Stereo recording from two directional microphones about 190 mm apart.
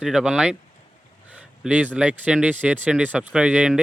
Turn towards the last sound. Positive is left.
turn(degrees=-5)  # may be behind; listen again after turning